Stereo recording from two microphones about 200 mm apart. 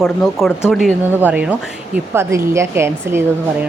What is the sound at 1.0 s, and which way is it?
A woman's voice, 10° right (ahead or behind).